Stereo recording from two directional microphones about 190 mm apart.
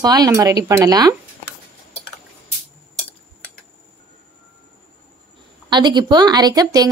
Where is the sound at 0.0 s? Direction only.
20° right (ahead or behind).